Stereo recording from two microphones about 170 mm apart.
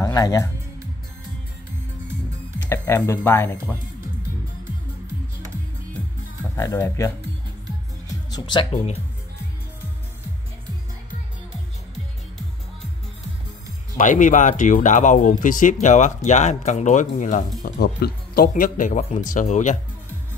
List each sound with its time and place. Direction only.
0.0 s speech: 20° left (ahead or behind)
2.6 s speech: 15° left (ahead or behind)
6.5 s speech: 20° left (ahead or behind)
8.3 s speech: 25° left (ahead or behind)
13.9 s speech: 50° left (ahead or behind)
17.7 s speech: 65° left (ahead or behind); by 19.8 s 45° left (ahead or behind)